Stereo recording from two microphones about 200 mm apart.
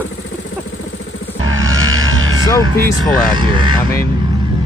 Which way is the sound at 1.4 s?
85° right.